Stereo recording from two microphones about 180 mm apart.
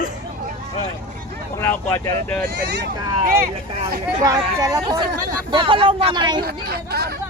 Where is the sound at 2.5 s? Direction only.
65° right (ahead or behind).